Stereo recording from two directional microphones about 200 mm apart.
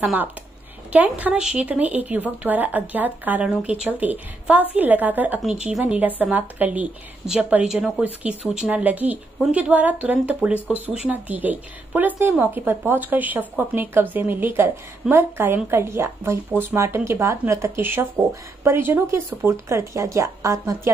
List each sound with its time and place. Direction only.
0.0 s speech: 10° right (ahead or behind)